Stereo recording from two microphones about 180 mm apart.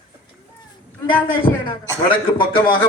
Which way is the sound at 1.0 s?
30° left (ahead or behind).